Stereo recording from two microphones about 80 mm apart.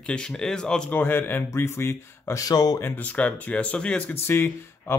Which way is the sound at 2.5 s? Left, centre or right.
Left.